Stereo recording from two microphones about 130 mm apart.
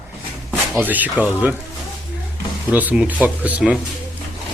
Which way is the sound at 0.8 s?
15° right (ahead or behind).